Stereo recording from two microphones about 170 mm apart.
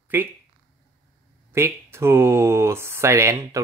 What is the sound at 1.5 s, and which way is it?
Speech, 15° right (ahead or behind).